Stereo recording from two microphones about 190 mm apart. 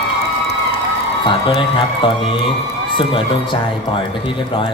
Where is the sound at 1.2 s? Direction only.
25° left (ahead or behind).